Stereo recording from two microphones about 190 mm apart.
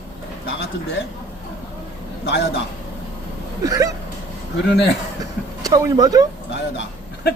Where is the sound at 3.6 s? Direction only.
20° right (ahead or behind).